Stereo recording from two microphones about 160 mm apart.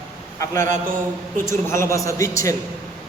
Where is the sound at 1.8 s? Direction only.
20° left (ahead or behind).